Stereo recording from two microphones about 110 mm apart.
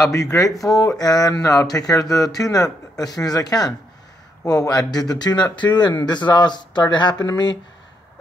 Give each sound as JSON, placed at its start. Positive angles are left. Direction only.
{"t": 0.1, "sound": "speech", "side_deg": 30}